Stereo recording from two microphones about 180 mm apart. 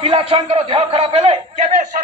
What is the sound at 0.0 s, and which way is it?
A man's voice, 35° right (ahead or behind).